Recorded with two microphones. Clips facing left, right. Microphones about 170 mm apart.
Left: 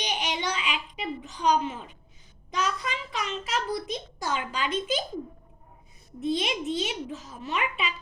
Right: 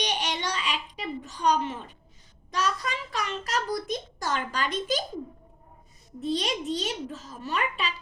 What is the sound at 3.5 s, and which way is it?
A child's voice, 45° right (ahead or behind).